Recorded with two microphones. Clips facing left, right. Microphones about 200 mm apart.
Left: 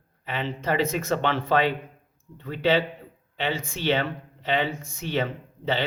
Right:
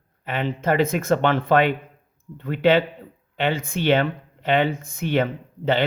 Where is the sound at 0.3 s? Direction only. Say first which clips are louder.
Right 5 dB; 50° right (ahead or behind).